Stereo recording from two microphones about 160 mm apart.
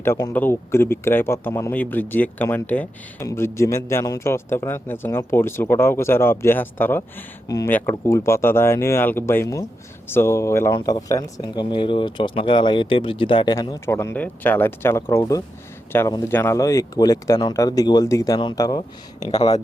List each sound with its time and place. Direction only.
0.3 s speech: 15° left (ahead or behind)